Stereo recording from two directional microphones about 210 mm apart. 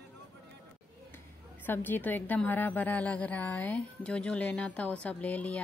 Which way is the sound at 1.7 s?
10° left (ahead or behind).